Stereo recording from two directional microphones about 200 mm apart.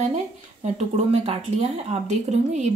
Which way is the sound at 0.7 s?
30° right (ahead or behind).